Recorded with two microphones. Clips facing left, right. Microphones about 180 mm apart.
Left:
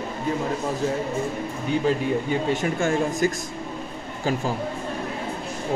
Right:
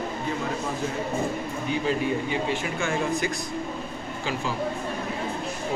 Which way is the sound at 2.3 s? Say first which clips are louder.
Left 4 dB; 45° left (ahead or behind).